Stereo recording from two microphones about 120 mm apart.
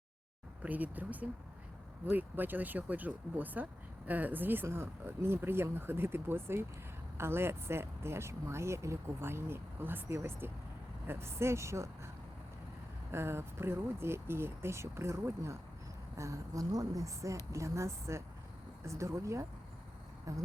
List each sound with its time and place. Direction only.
0.6 s speech: 15° right (ahead or behind)
13.1 s speech: 20° right (ahead or behind)